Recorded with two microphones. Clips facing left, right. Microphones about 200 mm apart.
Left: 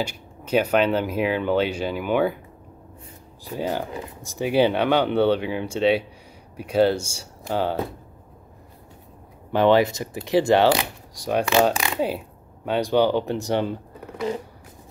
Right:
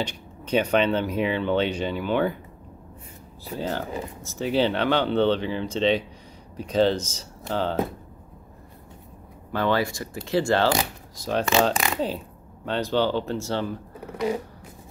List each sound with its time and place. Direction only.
0.0 s speech: 10° left (ahead or behind)
3.4 s speech: 15° left (ahead or behind)
9.5 s speech: 20° left (ahead or behind)
11.7 s speech: centre (ahead or behind)
12.6 s speech: 10° left (ahead or behind)
14.2 s a sound: 10° right (ahead or behind)